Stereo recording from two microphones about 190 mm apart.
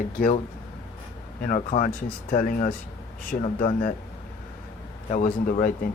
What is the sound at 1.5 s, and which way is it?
Speech, 45° left (ahead or behind).